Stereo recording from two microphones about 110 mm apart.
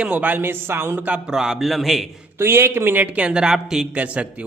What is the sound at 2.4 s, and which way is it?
A man's voice, 20° right (ahead or behind).